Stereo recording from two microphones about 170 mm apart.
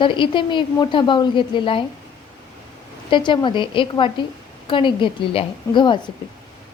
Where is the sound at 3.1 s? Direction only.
25° left (ahead or behind).